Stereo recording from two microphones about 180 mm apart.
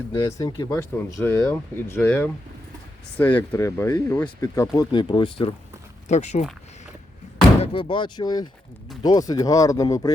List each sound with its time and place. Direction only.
0.1 s speech: 20° left (ahead or behind)
6.1 s speech: 40° left (ahead or behind)
7.6 s speech: 30° left (ahead or behind)